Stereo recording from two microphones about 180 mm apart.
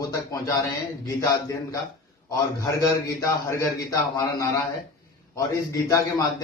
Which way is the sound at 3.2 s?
20° left (ahead or behind).